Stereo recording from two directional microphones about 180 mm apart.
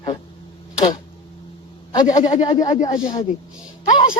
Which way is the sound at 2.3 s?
20° left (ahead or behind).